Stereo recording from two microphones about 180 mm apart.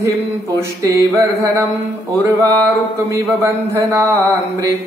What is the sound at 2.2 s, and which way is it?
Speech, 20° right (ahead or behind).